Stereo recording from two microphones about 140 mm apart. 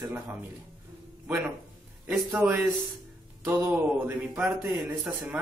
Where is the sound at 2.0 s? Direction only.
10° right (ahead or behind).